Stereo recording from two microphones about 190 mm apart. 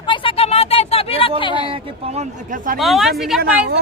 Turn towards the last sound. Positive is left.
turn(degrees=0)  # may be behind; listen again after turning